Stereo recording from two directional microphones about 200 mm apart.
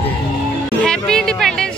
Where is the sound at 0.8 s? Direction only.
5° left (ahead or behind).